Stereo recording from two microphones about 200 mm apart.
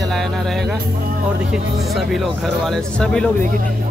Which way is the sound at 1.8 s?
Centre (ahead or behind).